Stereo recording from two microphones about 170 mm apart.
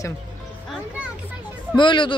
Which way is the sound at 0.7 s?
10° right (ahead or behind).